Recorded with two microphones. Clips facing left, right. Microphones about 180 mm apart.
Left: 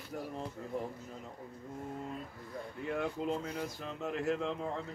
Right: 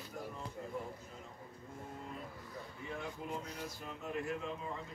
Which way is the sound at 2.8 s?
75° left (ahead or behind).